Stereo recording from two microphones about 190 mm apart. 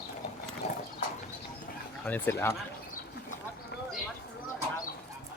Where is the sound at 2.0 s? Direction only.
10° left (ahead or behind).